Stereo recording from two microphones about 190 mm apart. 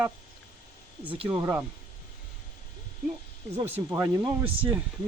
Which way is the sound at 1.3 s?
10° right (ahead or behind).